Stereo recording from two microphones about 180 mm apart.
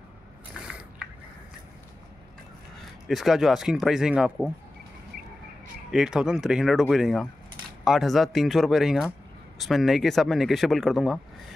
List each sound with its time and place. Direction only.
0.6 s a sound: 5° right (ahead or behind)
3.1 s speech: centre (ahead or behind)
5.9 s speech: 5° right (ahead or behind)